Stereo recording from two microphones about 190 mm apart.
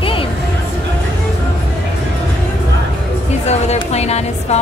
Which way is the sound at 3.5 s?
35° left (ahead or behind).